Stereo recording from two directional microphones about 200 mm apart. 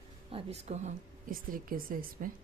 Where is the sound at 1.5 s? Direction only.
45° right (ahead or behind).